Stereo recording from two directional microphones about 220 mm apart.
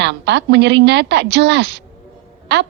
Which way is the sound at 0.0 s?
50° right (ahead or behind).